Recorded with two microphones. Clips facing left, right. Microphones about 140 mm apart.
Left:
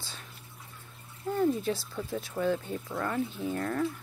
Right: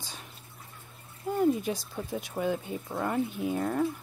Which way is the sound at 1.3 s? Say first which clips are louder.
Right 1 dB; 15° right (ahead or behind).